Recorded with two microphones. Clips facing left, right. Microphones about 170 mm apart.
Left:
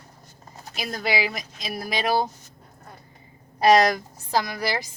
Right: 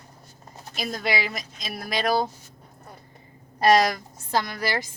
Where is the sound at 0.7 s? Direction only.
Centre (ahead or behind).